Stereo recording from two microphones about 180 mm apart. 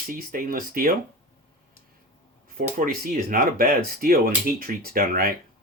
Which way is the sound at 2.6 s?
50° right (ahead or behind).